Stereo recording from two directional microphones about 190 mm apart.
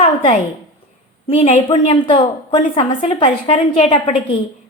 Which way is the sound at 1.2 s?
35° left (ahead or behind).